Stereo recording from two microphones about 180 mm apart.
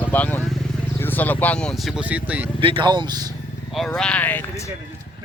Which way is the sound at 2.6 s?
30° right (ahead or behind).